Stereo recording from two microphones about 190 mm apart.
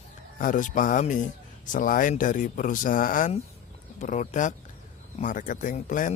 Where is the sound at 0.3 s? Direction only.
45° left (ahead or behind).